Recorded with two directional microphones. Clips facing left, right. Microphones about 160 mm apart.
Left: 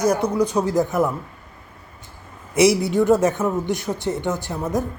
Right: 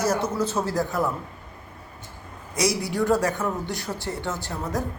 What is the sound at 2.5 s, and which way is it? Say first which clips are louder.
A woman's voice: left 8 dB; 25° left (ahead or behind).